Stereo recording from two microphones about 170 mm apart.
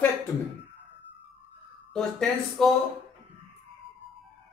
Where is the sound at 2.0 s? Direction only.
5° left (ahead or behind).